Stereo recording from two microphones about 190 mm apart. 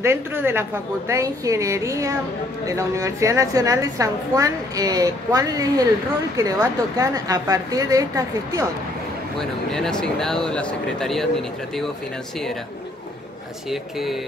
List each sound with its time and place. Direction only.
0.0 s a woman's voice: 10° right (ahead or behind)
9.4 s speech: 5° left (ahead or behind)
13.7 s speech: centre (ahead or behind)